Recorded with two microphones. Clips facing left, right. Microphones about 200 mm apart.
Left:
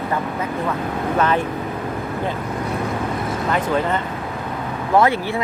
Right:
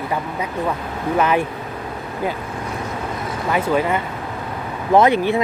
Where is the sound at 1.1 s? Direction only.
10° right (ahead or behind).